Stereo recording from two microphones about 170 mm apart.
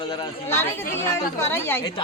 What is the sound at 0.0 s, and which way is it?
Speech, 30° left (ahead or behind).